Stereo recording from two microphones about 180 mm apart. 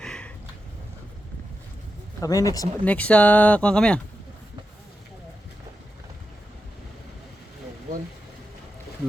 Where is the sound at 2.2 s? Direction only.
20° left (ahead or behind).